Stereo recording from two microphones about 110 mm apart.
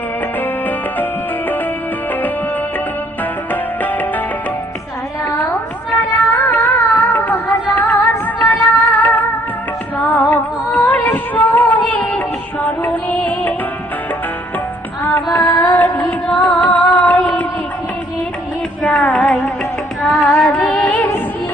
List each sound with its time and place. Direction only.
5.4 s music: 15° left (ahead or behind)
15.0 s music: 20° left (ahead or behind)
18.8 s music: 5° left (ahead or behind)